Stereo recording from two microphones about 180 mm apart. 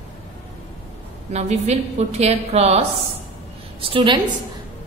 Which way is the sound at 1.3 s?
40° right (ahead or behind).